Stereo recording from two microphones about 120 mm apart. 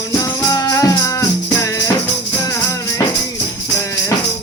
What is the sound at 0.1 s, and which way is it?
Music, 30° left (ahead or behind).